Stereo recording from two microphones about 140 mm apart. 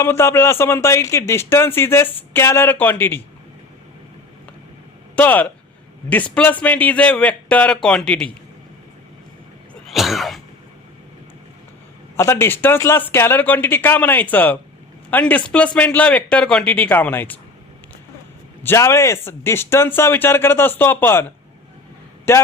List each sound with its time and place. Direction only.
0.0 s speech: 20° left (ahead or behind)
5.1 s speech: 10° left (ahead or behind)
9.8 s throat clearing: centre (ahead or behind)
12.1 s speech: 20° left (ahead or behind)
18.6 s speech: 20° left (ahead or behind)